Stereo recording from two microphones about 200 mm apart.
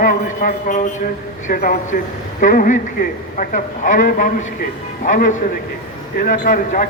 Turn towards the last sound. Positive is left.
turn(degrees=45)  # may be behind; listen again after turning